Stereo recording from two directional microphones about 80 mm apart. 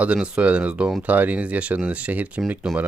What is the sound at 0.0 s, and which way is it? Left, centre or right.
Speech, centre.